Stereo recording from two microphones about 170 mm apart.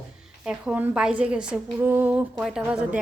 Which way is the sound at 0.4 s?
5° right (ahead or behind).